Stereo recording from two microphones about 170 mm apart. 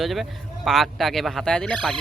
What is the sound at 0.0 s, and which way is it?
Speech, centre (ahead or behind).